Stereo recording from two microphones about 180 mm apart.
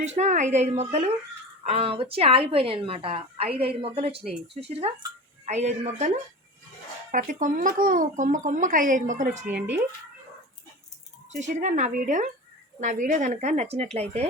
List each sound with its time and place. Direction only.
0.0 s a woman's voice: 40° right (ahead or behind)
5.5 s a woman's voice: 40° right (ahead or behind)
7.1 s speech: 45° right (ahead or behind)
11.3 s a woman's voice: 40° right (ahead or behind)